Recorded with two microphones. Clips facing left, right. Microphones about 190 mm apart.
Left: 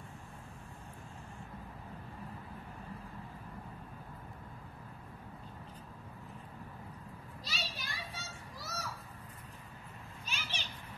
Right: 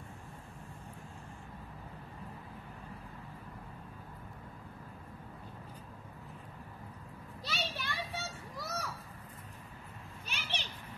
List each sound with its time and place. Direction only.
7.4 s children playing: 60° right (ahead or behind)
10.2 s children playing: 60° right (ahead or behind)